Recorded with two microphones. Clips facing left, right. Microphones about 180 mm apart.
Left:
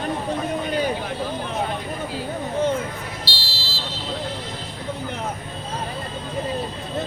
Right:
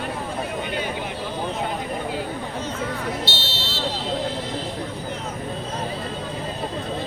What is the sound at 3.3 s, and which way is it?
Buzzer, 25° right (ahead or behind).